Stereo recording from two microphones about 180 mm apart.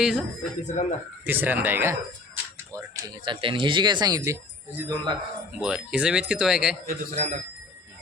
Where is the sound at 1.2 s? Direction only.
10° right (ahead or behind).